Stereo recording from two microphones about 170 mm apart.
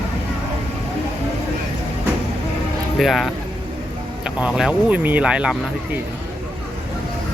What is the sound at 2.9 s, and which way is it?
Speech, centre (ahead or behind).